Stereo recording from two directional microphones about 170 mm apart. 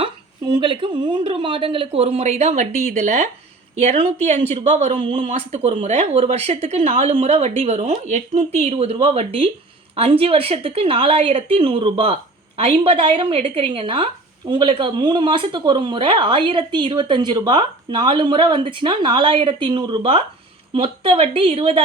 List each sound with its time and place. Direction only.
0.0 s a woman's voice: 25° right (ahead or behind)